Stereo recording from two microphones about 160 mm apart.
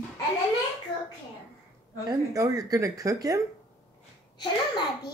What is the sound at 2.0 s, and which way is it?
Speech, 20° right (ahead or behind).